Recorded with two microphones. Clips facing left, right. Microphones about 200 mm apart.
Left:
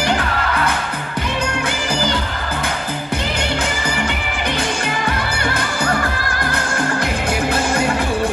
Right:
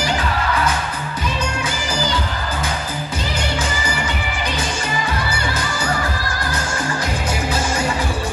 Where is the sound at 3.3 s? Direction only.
60° left (ahead or behind).